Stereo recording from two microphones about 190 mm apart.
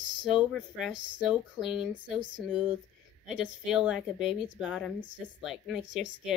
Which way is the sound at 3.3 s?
5° right (ahead or behind).